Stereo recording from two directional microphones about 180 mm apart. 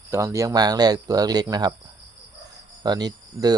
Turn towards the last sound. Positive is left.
turn(degrees=-20)  # may be behind; listen again after turning